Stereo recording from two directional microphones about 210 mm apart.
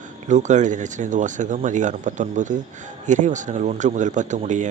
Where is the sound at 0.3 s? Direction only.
35° right (ahead or behind).